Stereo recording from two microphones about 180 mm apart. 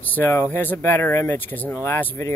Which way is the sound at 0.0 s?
10° left (ahead or behind).